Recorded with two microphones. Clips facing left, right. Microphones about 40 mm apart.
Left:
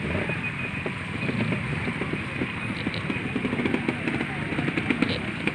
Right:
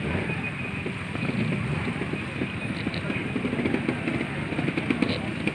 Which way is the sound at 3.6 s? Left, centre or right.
Left.